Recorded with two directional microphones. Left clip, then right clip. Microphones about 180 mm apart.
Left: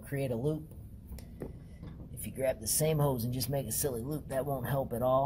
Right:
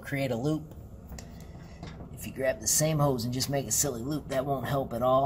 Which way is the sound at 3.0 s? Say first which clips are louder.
Right 5 dB; 30° left (ahead or behind).